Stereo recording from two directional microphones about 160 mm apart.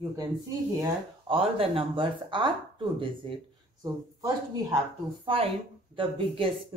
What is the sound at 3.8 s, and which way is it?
Speech, 20° right (ahead or behind).